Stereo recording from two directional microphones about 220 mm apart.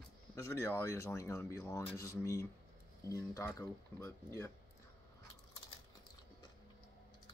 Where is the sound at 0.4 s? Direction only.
15° left (ahead or behind).